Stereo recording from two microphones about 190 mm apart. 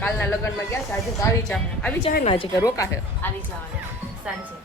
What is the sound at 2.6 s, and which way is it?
Speech, 15° left (ahead or behind).